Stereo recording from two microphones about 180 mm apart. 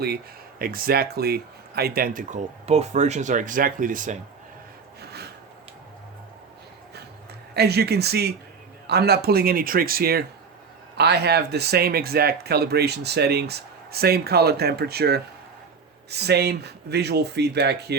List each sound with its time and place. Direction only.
0.6 s speech: 55° right (ahead or behind)
4.9 s filing: 65° right (ahead or behind)
7.5 s speech: 65° right (ahead or behind)